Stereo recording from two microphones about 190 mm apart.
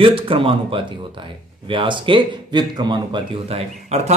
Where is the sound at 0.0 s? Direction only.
25° right (ahead or behind).